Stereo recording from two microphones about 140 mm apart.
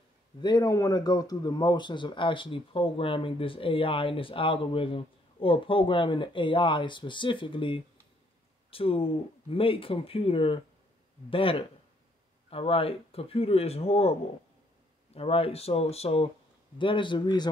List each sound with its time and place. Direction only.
0.4 s speech: 30° left (ahead or behind); by 14.1 s 45° left (ahead or behind)
15.1 s speech: 45° left (ahead or behind)
16.7 s speech: 35° left (ahead or behind)